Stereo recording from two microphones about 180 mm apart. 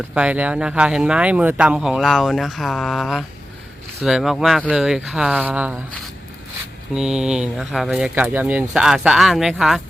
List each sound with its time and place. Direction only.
0.1 s speech: 10° right (ahead or behind)
6.9 s speech: 5° right (ahead or behind)